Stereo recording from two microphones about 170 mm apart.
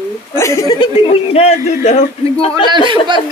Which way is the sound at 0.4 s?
20° left (ahead or behind).